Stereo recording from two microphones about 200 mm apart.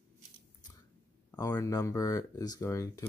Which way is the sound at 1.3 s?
15° left (ahead or behind).